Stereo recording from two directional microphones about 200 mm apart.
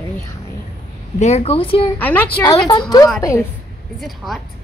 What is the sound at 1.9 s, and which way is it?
A woman's voice, 10° left (ahead or behind).